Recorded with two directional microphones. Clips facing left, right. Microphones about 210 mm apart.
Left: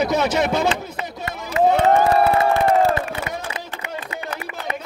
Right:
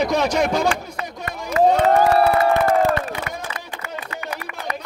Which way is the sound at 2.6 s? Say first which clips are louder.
Left 1 dB; 25° left (ahead or behind).